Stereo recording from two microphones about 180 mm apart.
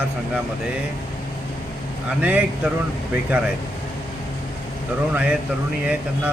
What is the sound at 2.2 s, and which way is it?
Speech, 10° right (ahead or behind).